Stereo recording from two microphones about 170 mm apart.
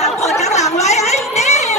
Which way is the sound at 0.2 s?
40° left (ahead or behind).